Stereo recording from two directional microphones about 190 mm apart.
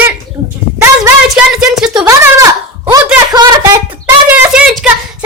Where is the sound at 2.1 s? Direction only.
15° right (ahead or behind).